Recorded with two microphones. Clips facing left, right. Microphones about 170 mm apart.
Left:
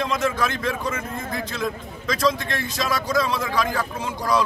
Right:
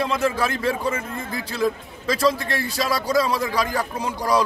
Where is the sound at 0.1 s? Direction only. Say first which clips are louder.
Right 1 dB; 30° right (ahead or behind).